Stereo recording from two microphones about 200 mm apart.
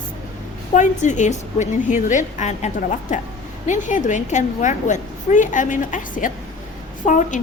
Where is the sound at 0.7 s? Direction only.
35° left (ahead or behind).